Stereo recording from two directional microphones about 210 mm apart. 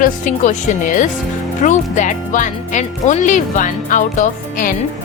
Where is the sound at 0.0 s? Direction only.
40° left (ahead or behind).